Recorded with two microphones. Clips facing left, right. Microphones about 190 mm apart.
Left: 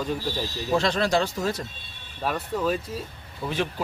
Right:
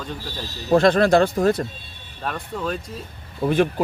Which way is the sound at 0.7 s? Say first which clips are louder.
Right 8 dB; 55° right (ahead or behind).